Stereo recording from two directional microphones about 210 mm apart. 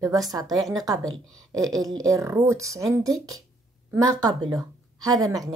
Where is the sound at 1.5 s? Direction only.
15° right (ahead or behind).